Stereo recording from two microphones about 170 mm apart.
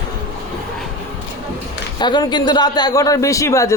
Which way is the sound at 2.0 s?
25° left (ahead or behind).